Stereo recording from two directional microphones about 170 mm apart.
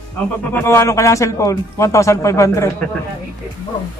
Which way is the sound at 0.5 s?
15° left (ahead or behind).